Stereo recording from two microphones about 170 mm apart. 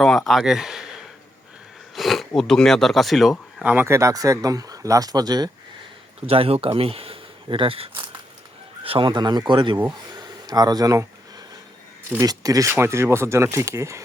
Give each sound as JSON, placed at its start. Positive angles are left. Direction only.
{"t": 0.0, "sound": "speech", "side_deg": 0}
{"t": 6.2, "sound": "speech", "side_deg": -35}
{"t": 10.2, "sound": "a sound", "side_deg": -25}
{"t": 12.1, "sound": "speech", "side_deg": -20}